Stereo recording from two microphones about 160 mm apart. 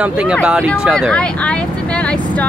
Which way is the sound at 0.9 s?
5° left (ahead or behind).